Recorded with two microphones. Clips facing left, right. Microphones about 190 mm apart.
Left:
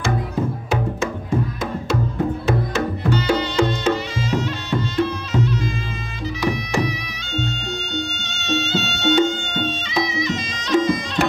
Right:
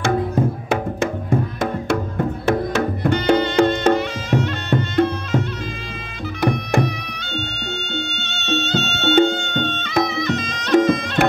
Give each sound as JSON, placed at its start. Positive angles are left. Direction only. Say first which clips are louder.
{"t": 2.4, "sound": "music", "louder": "right 2 dB", "side_deg": -55}
{"t": 7.9, "sound": "music", "louder": "even", "side_deg": -60}